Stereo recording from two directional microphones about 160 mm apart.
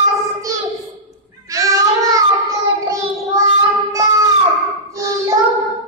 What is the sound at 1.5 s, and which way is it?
Child singing, 20° right (ahead or behind).